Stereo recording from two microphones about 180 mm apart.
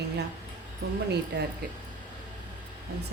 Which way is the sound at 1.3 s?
70° right (ahead or behind).